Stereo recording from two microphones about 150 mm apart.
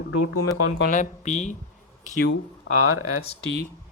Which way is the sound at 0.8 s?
55° left (ahead or behind).